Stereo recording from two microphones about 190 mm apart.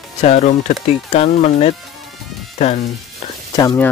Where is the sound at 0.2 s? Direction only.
35° left (ahead or behind).